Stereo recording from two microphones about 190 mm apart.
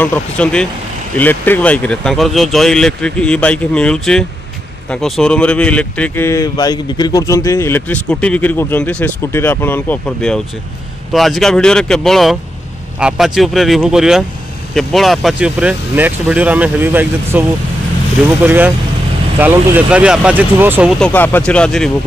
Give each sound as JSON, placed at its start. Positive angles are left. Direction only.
{"t": 0.0, "sound": "speech", "side_deg": 10}
{"t": 21.1, "sound": "speech", "side_deg": 10}